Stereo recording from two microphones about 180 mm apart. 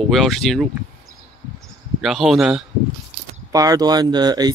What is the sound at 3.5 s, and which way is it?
Speech, 20° right (ahead or behind).